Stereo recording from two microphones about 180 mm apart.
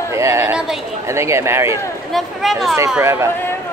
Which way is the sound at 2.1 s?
Centre (ahead or behind).